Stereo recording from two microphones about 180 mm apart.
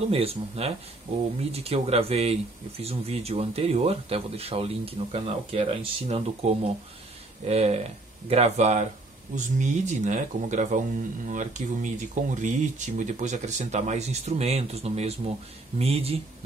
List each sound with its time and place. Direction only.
0.1 s speech: 35° right (ahead or behind)